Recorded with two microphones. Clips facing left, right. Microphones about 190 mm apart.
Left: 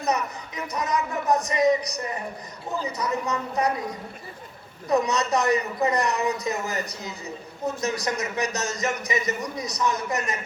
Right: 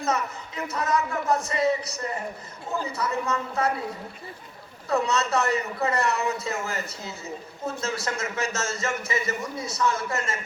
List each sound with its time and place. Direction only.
0.0 s a man's voice: 15° left (ahead or behind)